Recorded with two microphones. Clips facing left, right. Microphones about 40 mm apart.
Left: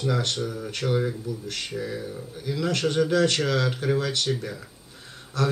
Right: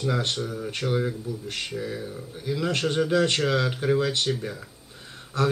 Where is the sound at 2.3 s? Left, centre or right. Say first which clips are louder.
Even; centre.